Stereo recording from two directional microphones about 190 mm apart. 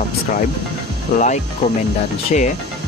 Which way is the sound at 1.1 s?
45° left (ahead or behind).